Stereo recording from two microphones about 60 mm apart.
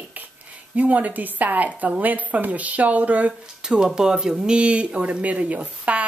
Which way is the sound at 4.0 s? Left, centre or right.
Centre.